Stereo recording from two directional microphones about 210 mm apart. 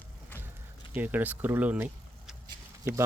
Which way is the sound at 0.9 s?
10° right (ahead or behind).